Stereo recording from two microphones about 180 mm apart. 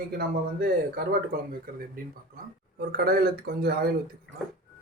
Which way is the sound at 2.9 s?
60° right (ahead or behind).